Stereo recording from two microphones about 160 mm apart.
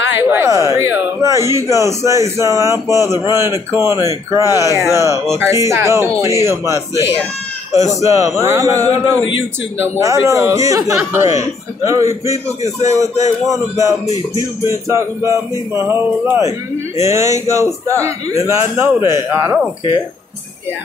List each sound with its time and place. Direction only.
0.1 s a man's voice: 15° right (ahead or behind)